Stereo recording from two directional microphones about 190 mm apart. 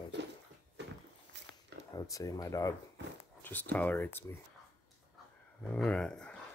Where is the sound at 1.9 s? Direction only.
20° left (ahead or behind).